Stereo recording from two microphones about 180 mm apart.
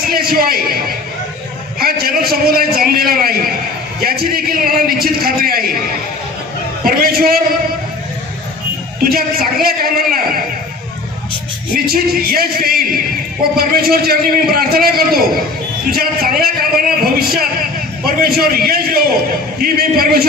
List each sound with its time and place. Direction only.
0.1 s a man's voice: 55° right (ahead or behind)
1.8 s a man's voice: 55° right (ahead or behind)
6.8 s a man's voice: 55° right (ahead or behind)
9.0 s a man's voice: 55° right (ahead or behind)
11.7 s a man's voice: 55° right (ahead or behind)